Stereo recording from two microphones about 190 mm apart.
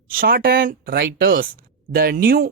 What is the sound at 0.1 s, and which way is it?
A woman's voice, 50° right (ahead or behind).